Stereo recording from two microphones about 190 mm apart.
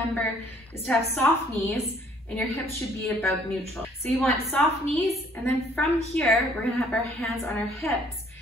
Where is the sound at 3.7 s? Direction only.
10° left (ahead or behind).